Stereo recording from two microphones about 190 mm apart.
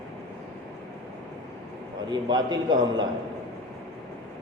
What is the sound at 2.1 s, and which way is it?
A man's voice, 20° right (ahead or behind).